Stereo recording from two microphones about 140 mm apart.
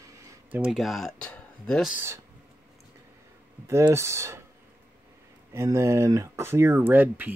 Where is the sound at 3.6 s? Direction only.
20° right (ahead or behind).